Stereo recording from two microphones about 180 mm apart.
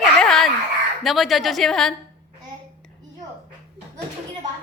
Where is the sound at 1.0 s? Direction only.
Centre (ahead or behind).